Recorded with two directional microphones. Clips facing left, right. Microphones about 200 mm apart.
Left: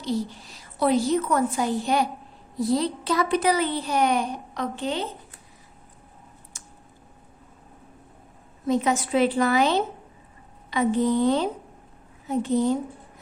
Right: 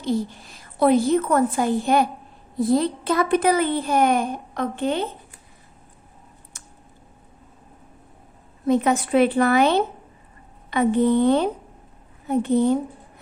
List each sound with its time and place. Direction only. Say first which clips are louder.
0.0 s a woman's voice: right 3 dB; 55° right (ahead or behind)
6.5 s a sound: even; 60° right (ahead or behind)
8.6 s a woman's voice: right 4 dB; 60° right (ahead or behind)